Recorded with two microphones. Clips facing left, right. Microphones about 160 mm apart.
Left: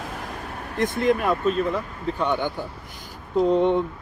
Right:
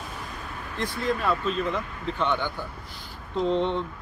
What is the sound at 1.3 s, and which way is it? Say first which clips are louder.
Speech: left 4 dB; 45° left (ahead or behind).